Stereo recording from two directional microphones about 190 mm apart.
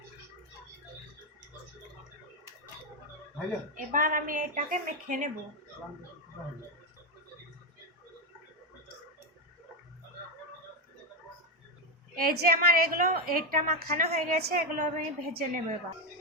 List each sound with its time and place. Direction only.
3.9 s a woman's voice: 45° right (ahead or behind)
12.1 s a woman's voice: 50° right (ahead or behind)